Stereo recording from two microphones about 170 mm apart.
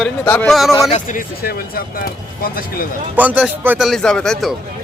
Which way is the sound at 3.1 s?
10° right (ahead or behind).